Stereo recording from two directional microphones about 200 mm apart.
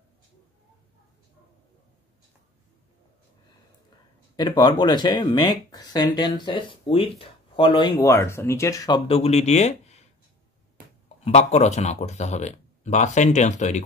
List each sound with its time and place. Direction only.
4.4 s speech: 20° left (ahead or behind)
11.2 s speech: 35° left (ahead or behind)